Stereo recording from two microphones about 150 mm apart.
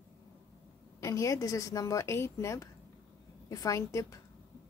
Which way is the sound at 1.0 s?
20° left (ahead or behind).